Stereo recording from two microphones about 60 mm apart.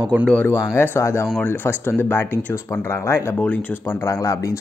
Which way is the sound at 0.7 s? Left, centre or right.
Left.